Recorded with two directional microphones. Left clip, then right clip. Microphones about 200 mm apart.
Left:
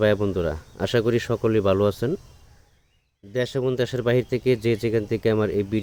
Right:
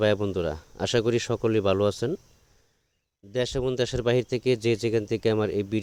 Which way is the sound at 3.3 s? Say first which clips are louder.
Left 2 dB; 45° right (ahead or behind).